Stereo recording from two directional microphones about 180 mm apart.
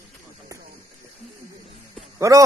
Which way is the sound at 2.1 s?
15° right (ahead or behind).